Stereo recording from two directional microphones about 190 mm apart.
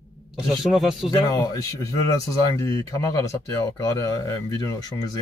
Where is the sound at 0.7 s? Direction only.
Centre (ahead or behind).